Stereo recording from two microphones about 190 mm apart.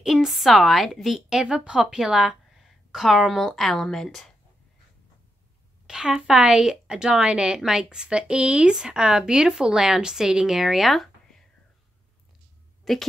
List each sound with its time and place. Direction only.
0.0 s a woman's voice: centre (ahead or behind)
5.9 s a woman's voice: 5° right (ahead or behind)
12.9 s a woman's voice: centre (ahead or behind)